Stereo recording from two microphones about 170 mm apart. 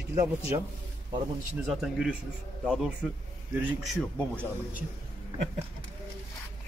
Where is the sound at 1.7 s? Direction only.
5° right (ahead or behind).